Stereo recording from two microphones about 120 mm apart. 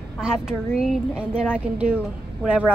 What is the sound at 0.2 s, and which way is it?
A woman's voice, 5° right (ahead or behind).